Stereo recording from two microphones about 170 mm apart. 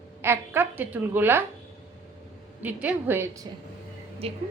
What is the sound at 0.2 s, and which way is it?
Speech, 15° right (ahead or behind).